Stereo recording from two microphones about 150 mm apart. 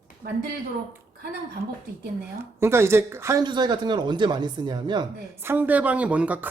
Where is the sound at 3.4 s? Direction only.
30° right (ahead or behind).